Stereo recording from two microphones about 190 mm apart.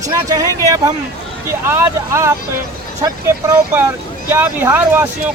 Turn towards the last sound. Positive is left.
turn(degrees=-10)  # may be behind; listen again after turning